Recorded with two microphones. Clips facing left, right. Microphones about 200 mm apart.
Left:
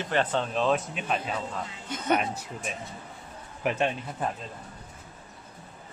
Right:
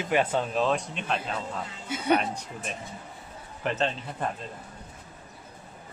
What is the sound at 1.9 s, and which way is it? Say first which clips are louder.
Speech: right 2 dB; 10° right (ahead or behind).